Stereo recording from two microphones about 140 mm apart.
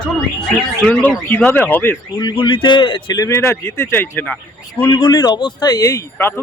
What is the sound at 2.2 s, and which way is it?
Speech, 35° left (ahead or behind).